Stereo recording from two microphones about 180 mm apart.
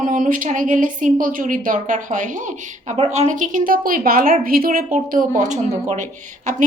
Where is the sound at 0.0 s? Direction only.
50° right (ahead or behind).